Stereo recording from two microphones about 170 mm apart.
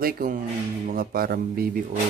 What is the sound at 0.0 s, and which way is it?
Speech, 60° right (ahead or behind).